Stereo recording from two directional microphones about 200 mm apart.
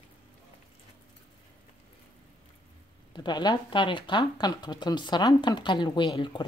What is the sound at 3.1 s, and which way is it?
Speech, 20° left (ahead or behind).